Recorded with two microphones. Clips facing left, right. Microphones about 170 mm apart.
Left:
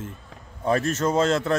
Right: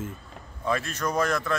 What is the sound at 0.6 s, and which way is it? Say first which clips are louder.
Speech: left 6 dB; 40° left (ahead or behind).